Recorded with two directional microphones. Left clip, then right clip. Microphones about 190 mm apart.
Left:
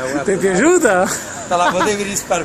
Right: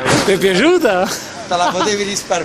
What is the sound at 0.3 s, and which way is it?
Speech, 15° right (ahead or behind).